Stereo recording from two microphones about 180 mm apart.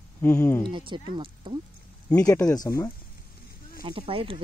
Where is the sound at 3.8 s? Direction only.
30° right (ahead or behind).